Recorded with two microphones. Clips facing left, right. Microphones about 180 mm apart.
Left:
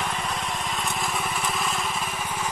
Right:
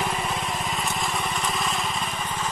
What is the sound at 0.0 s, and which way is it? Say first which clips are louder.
Vehicle: right 2 dB; 5° right (ahead or behind).